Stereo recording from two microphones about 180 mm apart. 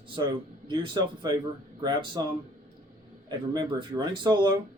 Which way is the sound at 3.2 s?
25° right (ahead or behind).